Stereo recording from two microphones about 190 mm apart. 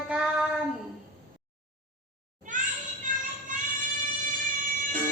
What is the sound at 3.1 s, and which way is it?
Music, 45° right (ahead or behind).